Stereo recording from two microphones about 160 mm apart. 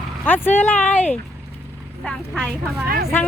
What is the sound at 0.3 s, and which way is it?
Speech, 10° left (ahead or behind).